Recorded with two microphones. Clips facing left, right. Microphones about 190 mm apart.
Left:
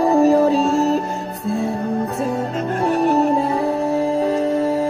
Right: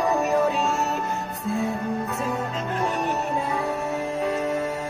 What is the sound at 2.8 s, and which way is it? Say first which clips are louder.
Music: left 10 dB; 35° left (ahead or behind).